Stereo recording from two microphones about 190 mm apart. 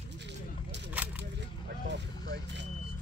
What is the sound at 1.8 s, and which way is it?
Vehicle, 65° right (ahead or behind).